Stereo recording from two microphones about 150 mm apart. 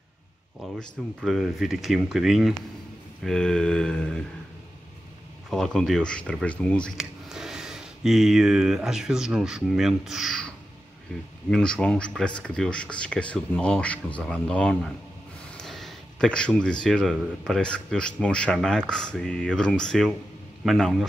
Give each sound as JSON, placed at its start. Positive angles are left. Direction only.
{"t": 0.7, "sound": "speech", "side_deg": 0}
{"t": 5.5, "sound": "speech", "side_deg": 5}
{"t": 11.5, "sound": "speech", "side_deg": 5}
{"t": 15.5, "sound": "a sound", "side_deg": 0}
{"t": 16.8, "sound": "speech", "side_deg": 5}